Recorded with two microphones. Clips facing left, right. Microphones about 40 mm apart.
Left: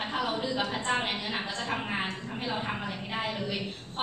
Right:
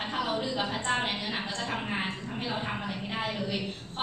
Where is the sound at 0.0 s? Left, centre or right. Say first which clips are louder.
Even; centre.